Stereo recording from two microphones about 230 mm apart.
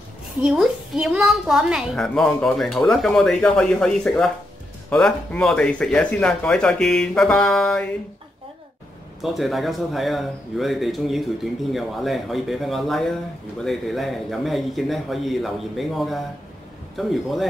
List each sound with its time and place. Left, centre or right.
0.4 s a woman's voice: centre
9.2 s a woman's voice: centre